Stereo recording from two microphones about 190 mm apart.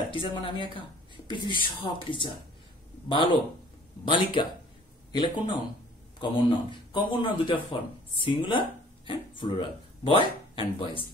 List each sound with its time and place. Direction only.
0.1 s a man's voice: 25° left (ahead or behind)